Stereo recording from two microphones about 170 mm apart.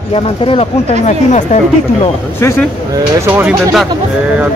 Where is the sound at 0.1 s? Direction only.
35° left (ahead or behind).